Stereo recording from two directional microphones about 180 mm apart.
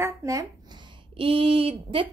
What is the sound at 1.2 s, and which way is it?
Speech, 30° right (ahead or behind).